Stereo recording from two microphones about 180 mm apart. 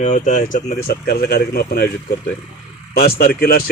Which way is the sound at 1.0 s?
60° left (ahead or behind).